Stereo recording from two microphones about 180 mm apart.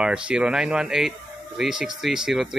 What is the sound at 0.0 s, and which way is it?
Speech, 5° right (ahead or behind).